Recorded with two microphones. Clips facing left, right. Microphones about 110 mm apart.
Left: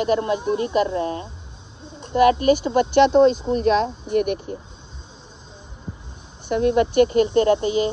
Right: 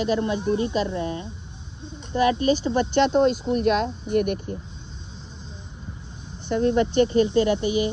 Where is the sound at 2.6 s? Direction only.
45° left (ahead or behind).